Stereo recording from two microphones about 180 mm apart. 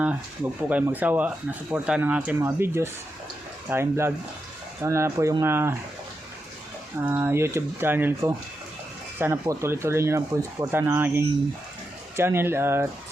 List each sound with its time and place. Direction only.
0.7 s speech: 10° right (ahead or behind)
7.0 s speech: 10° right (ahead or behind)